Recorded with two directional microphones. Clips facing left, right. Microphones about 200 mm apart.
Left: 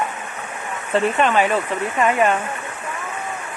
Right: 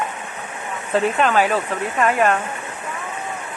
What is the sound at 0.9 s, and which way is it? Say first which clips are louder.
Speech: even; centre (ahead or behind).